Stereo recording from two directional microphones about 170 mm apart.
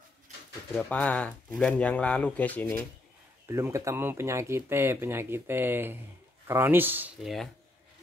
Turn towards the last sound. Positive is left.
turn(degrees=-10)  # may be behind; listen again after turning